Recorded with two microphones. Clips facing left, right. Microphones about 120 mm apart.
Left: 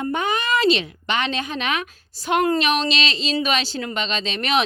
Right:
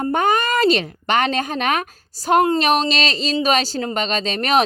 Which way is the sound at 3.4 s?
40° right (ahead or behind).